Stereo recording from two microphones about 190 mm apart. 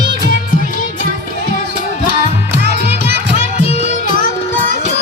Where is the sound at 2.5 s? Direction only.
60° right (ahead or behind).